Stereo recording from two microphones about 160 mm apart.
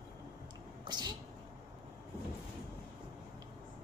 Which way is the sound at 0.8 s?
25° right (ahead or behind).